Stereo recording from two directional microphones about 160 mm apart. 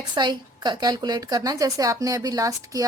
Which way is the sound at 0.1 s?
25° right (ahead or behind).